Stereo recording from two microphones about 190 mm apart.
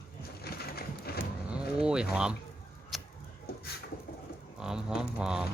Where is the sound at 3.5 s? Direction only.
55° left (ahead or behind).